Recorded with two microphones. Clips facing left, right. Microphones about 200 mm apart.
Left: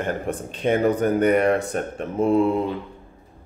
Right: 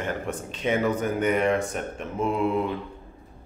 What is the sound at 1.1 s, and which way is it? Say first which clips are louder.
Speech: left 5 dB; 40° left (ahead or behind).